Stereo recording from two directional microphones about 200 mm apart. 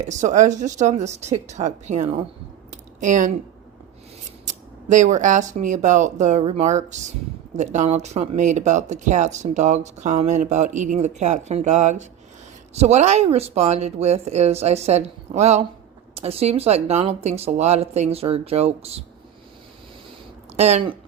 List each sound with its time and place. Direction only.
0.0 s speech: 35° right (ahead or behind)
2.6 s a sound: 40° right (ahead or behind)
4.9 s speech: 35° right (ahead or behind)
20.6 s speech: 30° right (ahead or behind)